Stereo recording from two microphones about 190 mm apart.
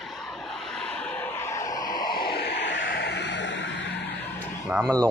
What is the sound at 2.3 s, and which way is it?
Vehicle, 60° left (ahead or behind).